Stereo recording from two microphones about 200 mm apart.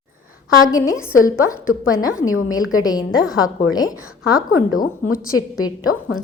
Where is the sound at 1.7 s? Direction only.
80° left.